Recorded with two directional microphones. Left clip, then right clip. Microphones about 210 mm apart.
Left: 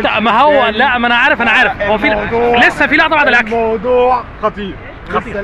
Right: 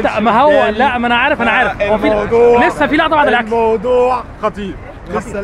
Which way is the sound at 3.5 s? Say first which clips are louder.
Even; 25° right (ahead or behind).